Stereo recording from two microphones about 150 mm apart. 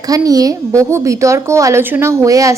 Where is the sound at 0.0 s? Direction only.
25° right (ahead or behind).